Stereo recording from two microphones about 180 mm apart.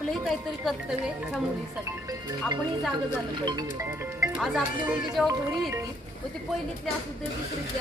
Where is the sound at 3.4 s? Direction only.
20° right (ahead or behind).